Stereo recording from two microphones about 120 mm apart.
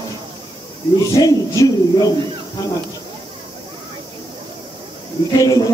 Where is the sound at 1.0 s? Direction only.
30° left (ahead or behind).